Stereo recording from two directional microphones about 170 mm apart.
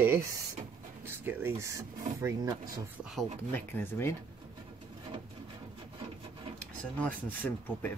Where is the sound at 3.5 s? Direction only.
10° left (ahead or behind).